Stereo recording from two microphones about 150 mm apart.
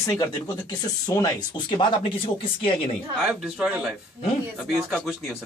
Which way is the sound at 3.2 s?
5° right (ahead or behind).